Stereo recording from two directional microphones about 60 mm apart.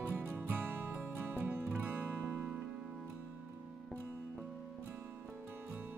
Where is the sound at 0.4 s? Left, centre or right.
Right.